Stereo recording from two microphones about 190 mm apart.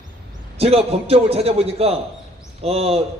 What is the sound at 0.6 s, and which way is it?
A man's voice, 30° right (ahead or behind).